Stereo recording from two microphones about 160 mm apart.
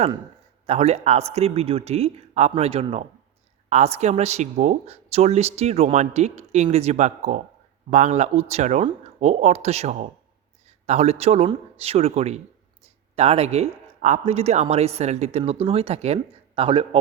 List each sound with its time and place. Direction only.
0.7 s speech: 40° right (ahead or behind)